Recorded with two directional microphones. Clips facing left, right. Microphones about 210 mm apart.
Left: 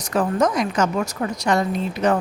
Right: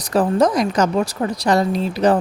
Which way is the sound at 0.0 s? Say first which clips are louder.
Right 4 dB; 35° right (ahead or behind).